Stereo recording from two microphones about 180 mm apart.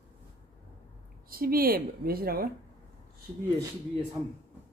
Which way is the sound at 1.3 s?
55° right (ahead or behind).